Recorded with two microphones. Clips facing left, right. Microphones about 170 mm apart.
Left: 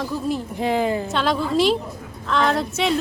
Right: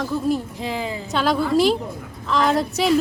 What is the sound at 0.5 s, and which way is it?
Speech, 55° left (ahead or behind).